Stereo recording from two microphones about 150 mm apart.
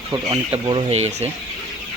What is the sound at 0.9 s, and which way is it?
Speech, 50° right (ahead or behind).